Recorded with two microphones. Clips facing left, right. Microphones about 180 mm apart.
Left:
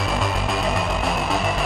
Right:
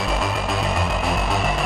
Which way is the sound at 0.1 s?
Centre (ahead or behind).